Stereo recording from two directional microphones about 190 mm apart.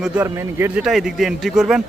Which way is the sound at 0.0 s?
10° right (ahead or behind).